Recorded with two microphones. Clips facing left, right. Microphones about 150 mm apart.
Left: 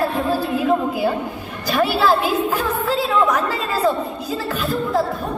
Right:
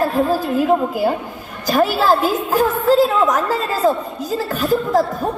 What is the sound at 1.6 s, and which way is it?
Speech, 45° right (ahead or behind).